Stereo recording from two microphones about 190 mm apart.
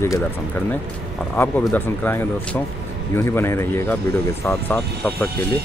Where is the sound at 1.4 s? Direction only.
10° left (ahead or behind).